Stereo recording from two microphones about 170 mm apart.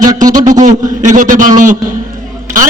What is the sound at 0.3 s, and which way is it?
Speech, 20° right (ahead or behind).